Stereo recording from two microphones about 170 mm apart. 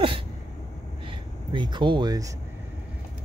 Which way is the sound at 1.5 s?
25° right (ahead or behind).